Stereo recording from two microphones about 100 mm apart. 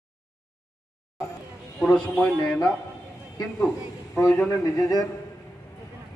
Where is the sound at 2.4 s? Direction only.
10° left (ahead or behind).